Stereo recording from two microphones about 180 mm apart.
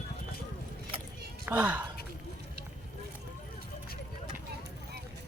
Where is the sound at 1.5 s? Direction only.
10° right (ahead or behind).